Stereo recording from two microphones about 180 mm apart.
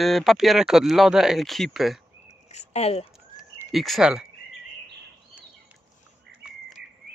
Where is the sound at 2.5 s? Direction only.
35° left (ahead or behind).